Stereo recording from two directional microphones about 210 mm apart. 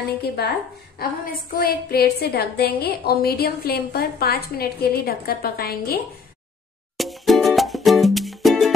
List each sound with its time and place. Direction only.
0.4 s a woman's voice: 50° left (ahead or behind)
7.0 s music: centre (ahead or behind)